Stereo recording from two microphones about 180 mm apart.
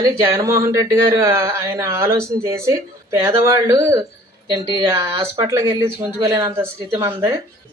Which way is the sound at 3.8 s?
15° right (ahead or behind).